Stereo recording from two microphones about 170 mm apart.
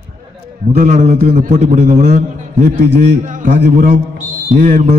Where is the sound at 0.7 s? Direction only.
45° right (ahead or behind).